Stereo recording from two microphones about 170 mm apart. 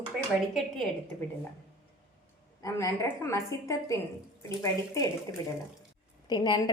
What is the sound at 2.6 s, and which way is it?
A woman's voice, 20° left (ahead or behind).